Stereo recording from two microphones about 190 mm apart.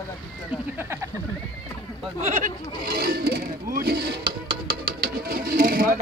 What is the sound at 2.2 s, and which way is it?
Speech, 50° right (ahead or behind).